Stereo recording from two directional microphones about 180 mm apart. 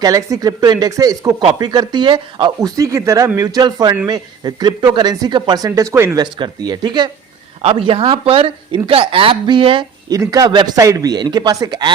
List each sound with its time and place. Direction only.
0.0 s speech: 20° right (ahead or behind)
6.3 s speech: 25° right (ahead or behind)